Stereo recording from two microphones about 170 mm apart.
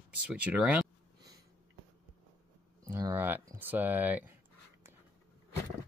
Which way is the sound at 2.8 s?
15° right (ahead or behind).